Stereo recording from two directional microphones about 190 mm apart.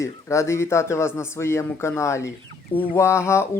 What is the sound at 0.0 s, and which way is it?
Speech, 15° left (ahead or behind).